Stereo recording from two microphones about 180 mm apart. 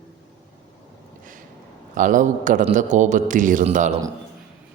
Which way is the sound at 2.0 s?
45° right (ahead or behind).